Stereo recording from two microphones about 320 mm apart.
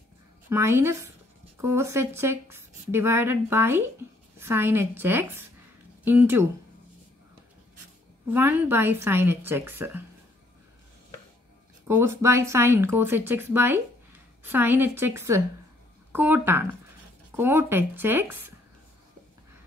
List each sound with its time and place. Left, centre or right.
0.5 s a woman's voice: centre
8.3 s a woman's voice: centre
11.9 s a woman's voice: centre